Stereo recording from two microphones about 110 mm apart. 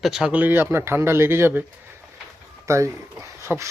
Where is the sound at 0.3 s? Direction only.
20° right (ahead or behind).